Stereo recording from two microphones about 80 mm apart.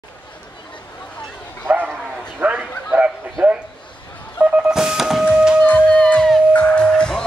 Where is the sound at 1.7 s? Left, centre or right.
Right.